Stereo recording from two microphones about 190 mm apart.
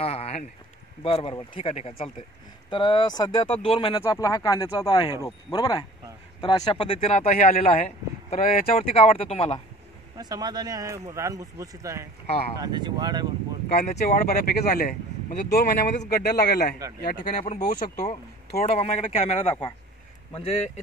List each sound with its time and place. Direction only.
0.0 s speech: 30° left (ahead or behind)
8.4 s speech: 50° left (ahead or behind)
8.8 s speech: 30° left (ahead or behind)
10.1 s speech: 20° right (ahead or behind)
12.3 s speech: 35° left (ahead or behind)
12.5 s speech: 20° right (ahead or behind)
13.7 s a man's voice: 55° left (ahead or behind)
18.6 s speech: 35° left (ahead or behind)